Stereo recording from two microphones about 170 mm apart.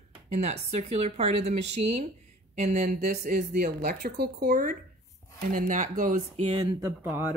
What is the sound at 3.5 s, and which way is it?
Speech, 65° right (ahead or behind).